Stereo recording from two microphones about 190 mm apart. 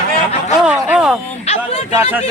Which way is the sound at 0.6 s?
5° right (ahead or behind).